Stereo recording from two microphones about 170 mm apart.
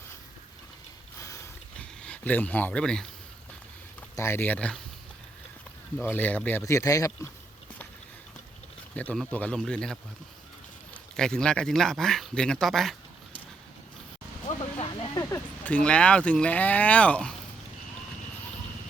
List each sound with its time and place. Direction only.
1.2 s mechanisms: 15° left (ahead or behind)
2.0 s speech: 10° left (ahead or behind)
4.1 s speech: 15° left (ahead or behind)
6.0 s speech: 10° left (ahead or behind)
9.0 s speech: 10° left (ahead or behind)
14.6 s a sound: 30° left (ahead or behind)
15.2 s speech: 10° left (ahead or behind)